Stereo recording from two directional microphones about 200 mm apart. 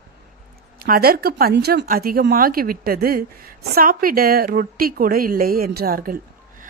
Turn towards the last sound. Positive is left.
turn(degrees=-45)  # may be behind; listen again after turning